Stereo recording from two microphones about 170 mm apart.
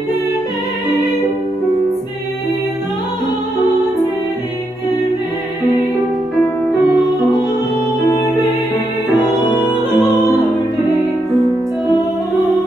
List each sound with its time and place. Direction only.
8.1 s music: 20° left (ahead or behind)